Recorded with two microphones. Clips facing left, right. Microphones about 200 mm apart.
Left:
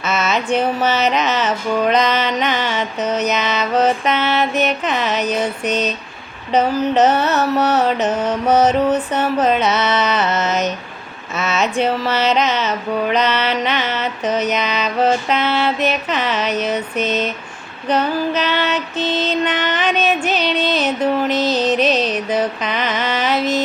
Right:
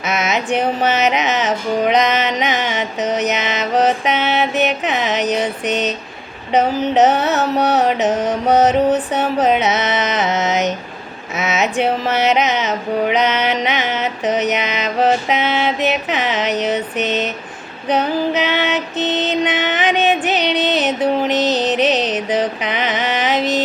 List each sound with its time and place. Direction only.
0.0 s music: 15° right (ahead or behind)
6.5 s mantra: 15° right (ahead or behind)
17.8 s music: 15° right (ahead or behind)